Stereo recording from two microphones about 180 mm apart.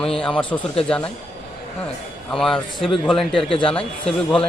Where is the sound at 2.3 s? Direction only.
5° left (ahead or behind).